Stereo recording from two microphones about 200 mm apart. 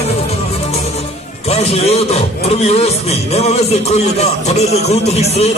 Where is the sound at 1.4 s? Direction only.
30° left (ahead or behind).